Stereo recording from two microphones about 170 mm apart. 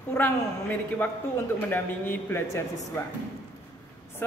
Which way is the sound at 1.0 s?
15° left (ahead or behind).